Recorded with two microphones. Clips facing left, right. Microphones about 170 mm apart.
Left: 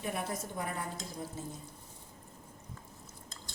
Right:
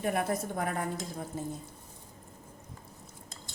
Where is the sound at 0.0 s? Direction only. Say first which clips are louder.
Right 7 dB; 60° right (ahead or behind).